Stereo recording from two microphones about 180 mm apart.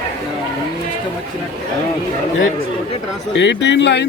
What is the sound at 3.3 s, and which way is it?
Speech, 75° left (ahead or behind).